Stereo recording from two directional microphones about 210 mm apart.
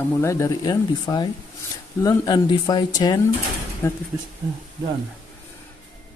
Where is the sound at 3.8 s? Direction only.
10° left (ahead or behind).